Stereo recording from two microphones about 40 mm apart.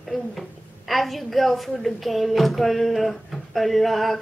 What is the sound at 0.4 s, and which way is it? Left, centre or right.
A woman's voice, centre.